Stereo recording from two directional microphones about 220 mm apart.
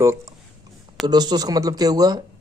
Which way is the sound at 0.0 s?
10° right (ahead or behind).